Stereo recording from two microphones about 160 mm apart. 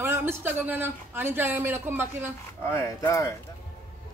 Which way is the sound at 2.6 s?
15° left (ahead or behind).